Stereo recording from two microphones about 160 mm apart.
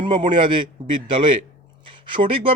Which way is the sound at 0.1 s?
30° right (ahead or behind).